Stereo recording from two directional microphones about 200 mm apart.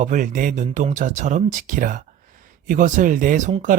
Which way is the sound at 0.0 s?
40° right (ahead or behind).